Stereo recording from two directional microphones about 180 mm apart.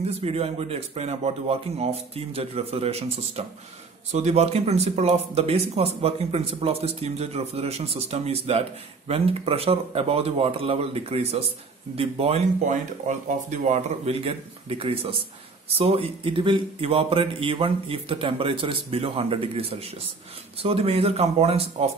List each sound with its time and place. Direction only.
0.0 s speech: 35° right (ahead or behind)